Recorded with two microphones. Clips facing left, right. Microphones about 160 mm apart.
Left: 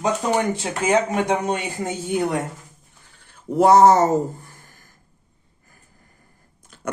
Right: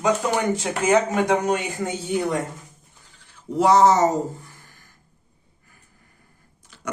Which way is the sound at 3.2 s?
50° left (ahead or behind).